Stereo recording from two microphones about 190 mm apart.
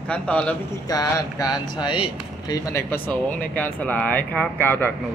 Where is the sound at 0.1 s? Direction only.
5° left (ahead or behind).